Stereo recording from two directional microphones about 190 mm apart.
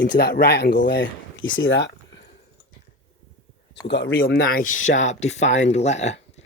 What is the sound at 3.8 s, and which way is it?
Speech, 70° left (ahead or behind).